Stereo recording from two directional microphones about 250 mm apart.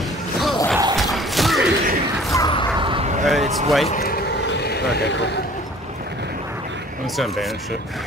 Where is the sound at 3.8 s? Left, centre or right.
Left.